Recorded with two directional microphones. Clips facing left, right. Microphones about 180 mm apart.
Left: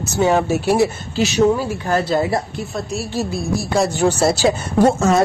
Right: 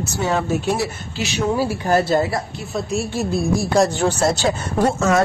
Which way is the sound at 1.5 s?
10° right (ahead or behind).